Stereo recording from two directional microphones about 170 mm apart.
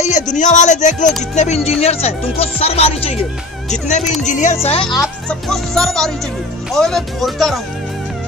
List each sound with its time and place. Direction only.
0.0 s speech: 45° left (ahead or behind)
4.0 s speech: centre (ahead or behind)
4.3 s speech: 45° left (ahead or behind)
4.6 s speech: 30° left (ahead or behind)
5.3 s speech: centre (ahead or behind)